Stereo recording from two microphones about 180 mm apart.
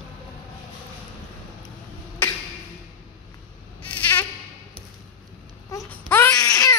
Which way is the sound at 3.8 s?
10° left (ahead or behind).